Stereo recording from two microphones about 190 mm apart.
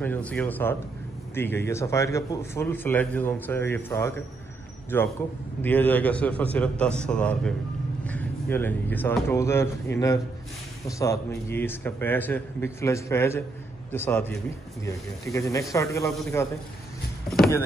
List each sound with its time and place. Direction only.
0.0 s speech: 10° left (ahead or behind)
15.3 s speech: 15° left (ahead or behind)